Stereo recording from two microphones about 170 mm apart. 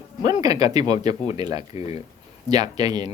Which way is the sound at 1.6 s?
40° left (ahead or behind).